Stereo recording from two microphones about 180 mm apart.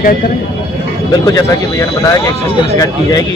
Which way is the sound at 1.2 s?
15° left (ahead or behind).